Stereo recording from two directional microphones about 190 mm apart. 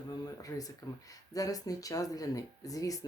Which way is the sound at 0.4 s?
20° left (ahead or behind).